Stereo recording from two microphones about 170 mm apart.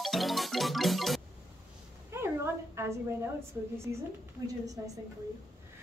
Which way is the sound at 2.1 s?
15° right (ahead or behind).